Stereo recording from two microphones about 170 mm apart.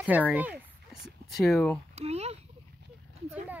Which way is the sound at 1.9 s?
40° right (ahead or behind).